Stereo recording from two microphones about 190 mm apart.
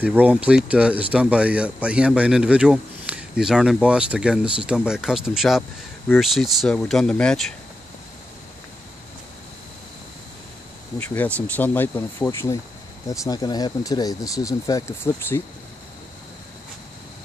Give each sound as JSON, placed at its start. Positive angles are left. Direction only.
{"t": 0.0, "sound": "speech", "side_deg": -10}
{"t": 11.0, "sound": "speech", "side_deg": 10}